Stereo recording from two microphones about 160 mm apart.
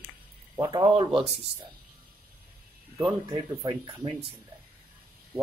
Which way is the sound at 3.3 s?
20° right (ahead or behind).